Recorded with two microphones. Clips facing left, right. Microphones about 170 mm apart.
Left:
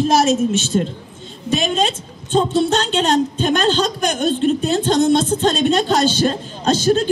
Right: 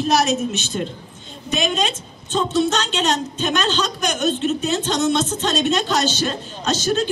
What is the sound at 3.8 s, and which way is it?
A woman's voice, 35° left (ahead or behind).